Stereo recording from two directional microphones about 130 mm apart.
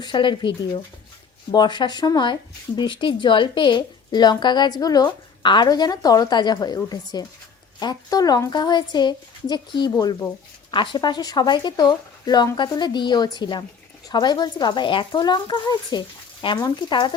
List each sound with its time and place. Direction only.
0.0 s speech: 40° left (ahead or behind)
1.5 s speech: 35° left (ahead or behind)